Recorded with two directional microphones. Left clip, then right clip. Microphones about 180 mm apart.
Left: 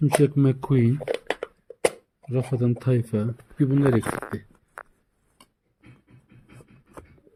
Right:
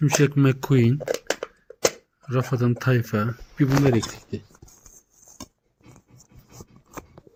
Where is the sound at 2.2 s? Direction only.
Centre (ahead or behind).